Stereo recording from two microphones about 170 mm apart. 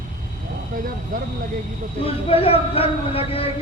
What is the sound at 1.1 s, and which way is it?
Speech, 55° right (ahead or behind).